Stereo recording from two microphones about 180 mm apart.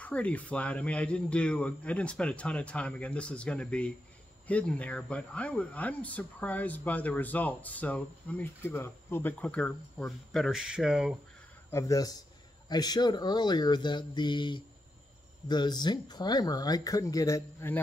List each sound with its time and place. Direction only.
0.0 s speech: 5° left (ahead or behind)
11.7 s speech: 20° left (ahead or behind)